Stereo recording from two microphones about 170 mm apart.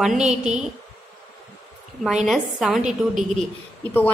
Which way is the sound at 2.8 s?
45° right (ahead or behind).